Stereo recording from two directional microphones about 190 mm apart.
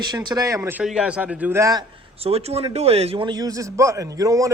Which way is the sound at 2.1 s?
30° right (ahead or behind).